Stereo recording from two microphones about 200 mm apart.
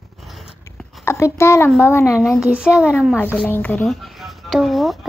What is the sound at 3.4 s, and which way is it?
Speech, 10° left (ahead or behind).